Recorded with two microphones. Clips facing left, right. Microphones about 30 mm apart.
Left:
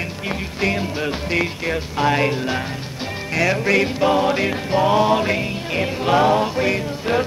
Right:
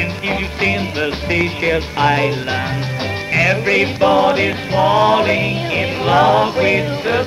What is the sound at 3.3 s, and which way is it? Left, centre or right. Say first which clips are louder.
Music: right 3 dB; right.